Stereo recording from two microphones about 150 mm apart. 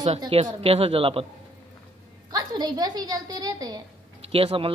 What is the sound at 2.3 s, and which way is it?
A woman's voice, 25° right (ahead or behind).